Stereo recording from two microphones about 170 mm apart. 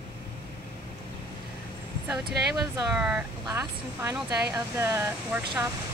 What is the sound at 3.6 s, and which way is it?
Speech, 15° right (ahead or behind).